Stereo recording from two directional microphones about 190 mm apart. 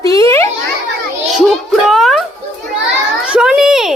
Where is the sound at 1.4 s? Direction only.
Centre (ahead or behind).